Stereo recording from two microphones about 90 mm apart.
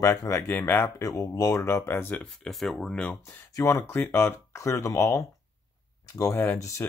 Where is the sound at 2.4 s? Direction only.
Centre (ahead or behind).